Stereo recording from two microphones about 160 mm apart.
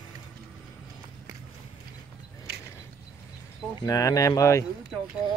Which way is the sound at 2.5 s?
90° right.